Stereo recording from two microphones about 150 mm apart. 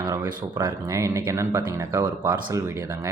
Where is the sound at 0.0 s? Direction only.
25° right (ahead or behind).